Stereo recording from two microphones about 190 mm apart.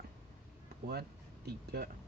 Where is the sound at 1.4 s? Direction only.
55° right (ahead or behind).